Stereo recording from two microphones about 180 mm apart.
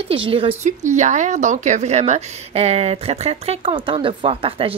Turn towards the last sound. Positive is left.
turn(degrees=-30)  # may be behind; listen again after turning